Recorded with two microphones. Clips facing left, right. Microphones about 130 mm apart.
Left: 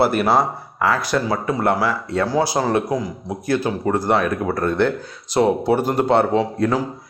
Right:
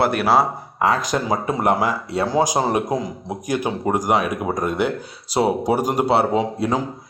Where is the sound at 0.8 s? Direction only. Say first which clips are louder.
Even; 20° right (ahead or behind).